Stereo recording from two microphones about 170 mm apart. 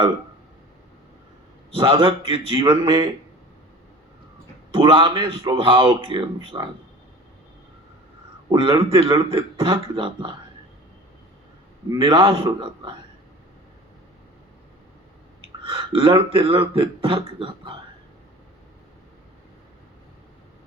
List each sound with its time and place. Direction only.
1.7 s speech: 30° right (ahead or behind)
4.7 s speech: 30° right (ahead or behind)
8.4 s speech: 30° right (ahead or behind)
11.9 s speech: 30° right (ahead or behind)
15.6 s speech: 30° right (ahead or behind)